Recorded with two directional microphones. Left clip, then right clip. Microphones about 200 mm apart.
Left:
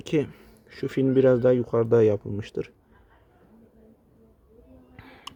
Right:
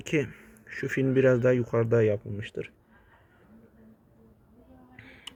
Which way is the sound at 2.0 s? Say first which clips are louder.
Left 4 dB; 30° left (ahead or behind).